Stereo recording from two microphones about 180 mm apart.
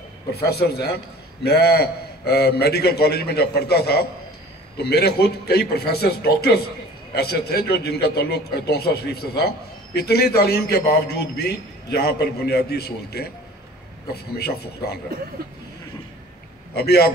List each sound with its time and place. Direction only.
0.3 s a man's voice: 60° left (ahead or behind)
16.7 s a man's voice: 60° left (ahead or behind)